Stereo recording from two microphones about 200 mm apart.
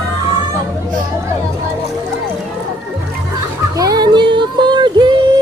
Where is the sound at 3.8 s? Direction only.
20° right (ahead or behind).